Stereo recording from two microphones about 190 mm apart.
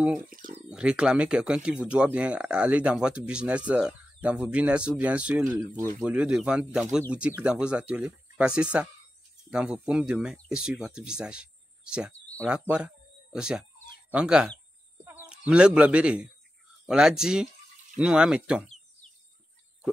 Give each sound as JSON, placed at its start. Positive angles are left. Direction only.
{"t": 0.3, "sound": "speech", "side_deg": -45}
{"t": 0.7, "sound": "speech", "side_deg": -5}